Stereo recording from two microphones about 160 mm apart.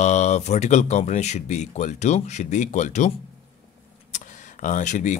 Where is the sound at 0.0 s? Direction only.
45° left (ahead or behind).